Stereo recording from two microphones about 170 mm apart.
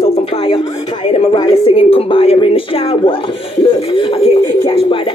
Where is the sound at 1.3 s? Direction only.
30° left (ahead or behind).